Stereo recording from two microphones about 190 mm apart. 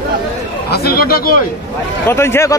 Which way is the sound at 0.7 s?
55° left (ahead or behind).